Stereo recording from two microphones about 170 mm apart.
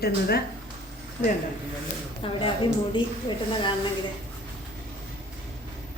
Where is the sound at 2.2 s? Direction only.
30° left (ahead or behind).